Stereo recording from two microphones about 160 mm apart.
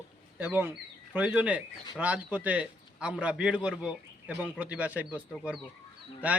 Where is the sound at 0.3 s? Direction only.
10° right (ahead or behind).